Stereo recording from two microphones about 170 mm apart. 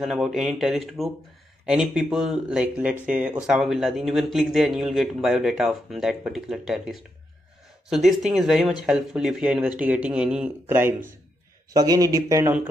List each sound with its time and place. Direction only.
0.0 s speech: centre (ahead or behind); by 12.5 s 20° right (ahead or behind)